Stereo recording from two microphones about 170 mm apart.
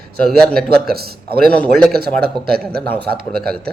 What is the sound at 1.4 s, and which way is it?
Speech, 5° left (ahead or behind).